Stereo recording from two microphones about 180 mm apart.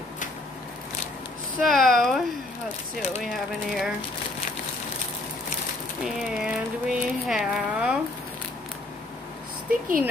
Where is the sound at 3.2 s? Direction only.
Centre (ahead or behind).